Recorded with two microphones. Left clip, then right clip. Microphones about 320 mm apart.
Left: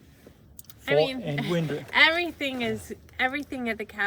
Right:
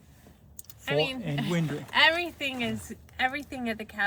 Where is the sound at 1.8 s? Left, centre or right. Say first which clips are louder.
Left 2 dB; centre.